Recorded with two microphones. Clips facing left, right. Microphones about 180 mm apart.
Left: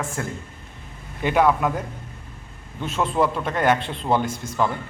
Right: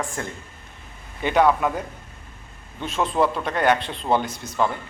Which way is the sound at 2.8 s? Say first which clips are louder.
Even; 5° left (ahead or behind).